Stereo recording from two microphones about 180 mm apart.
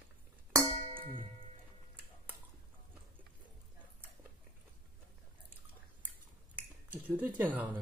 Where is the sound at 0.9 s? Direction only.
30° right (ahead or behind).